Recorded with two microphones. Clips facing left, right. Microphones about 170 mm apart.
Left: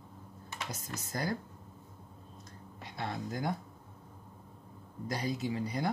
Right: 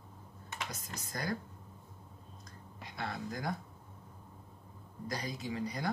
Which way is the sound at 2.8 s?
25° left (ahead or behind).